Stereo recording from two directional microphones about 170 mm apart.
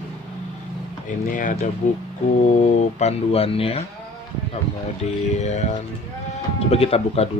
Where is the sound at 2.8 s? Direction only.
40° left (ahead or behind).